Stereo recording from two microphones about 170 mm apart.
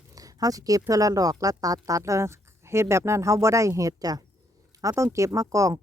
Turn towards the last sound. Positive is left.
turn(degrees=-20)  # may be behind; listen again after turning